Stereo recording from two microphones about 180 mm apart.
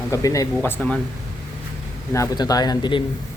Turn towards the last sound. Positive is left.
turn(degrees=25)  # may be behind; listen again after turning